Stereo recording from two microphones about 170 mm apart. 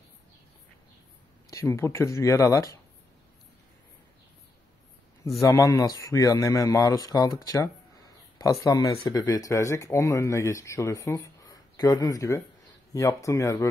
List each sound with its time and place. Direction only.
1.5 s speech: 20° left (ahead or behind)
5.4 s speech: 20° left (ahead or behind)